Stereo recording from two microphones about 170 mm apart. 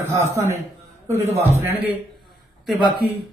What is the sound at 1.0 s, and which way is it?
Speech, 15° right (ahead or behind).